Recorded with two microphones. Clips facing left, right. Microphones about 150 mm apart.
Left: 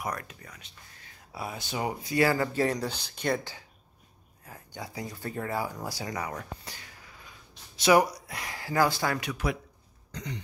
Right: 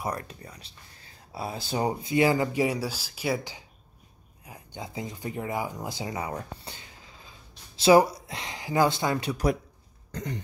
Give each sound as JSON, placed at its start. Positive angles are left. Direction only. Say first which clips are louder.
{"t": 0.0, "sound": "speech", "louder": "right 3 dB", "side_deg": -30}
{"t": 10.1, "sound": "throat clearing", "louder": "right 4 dB", "side_deg": -50}